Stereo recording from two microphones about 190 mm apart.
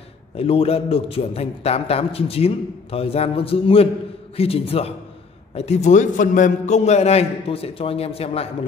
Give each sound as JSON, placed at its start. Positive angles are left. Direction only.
{"t": 0.4, "sound": "a man's voice", "side_deg": 30}